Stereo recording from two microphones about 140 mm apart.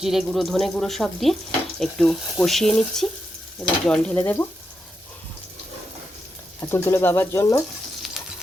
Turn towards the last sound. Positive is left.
turn(degrees=20)  # may be behind; listen again after turning